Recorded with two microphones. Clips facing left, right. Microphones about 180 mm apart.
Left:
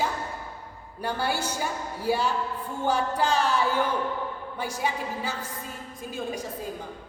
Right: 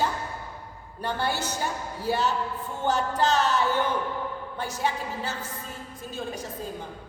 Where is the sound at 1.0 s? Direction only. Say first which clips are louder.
Even; 10° left (ahead or behind).